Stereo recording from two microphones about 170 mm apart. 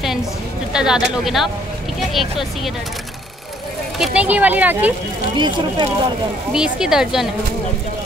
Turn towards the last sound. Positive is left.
turn(degrees=-5)  # may be behind; listen again after turning